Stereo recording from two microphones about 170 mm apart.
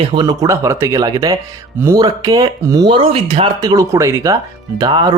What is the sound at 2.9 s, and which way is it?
Speech, 35° right (ahead or behind).